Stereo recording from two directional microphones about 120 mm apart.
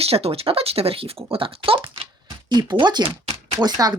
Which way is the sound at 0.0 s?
55° right (ahead or behind).